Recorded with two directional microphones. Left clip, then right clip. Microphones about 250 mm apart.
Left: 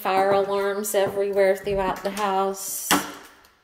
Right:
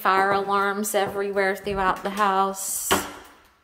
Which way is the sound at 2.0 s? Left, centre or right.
Right.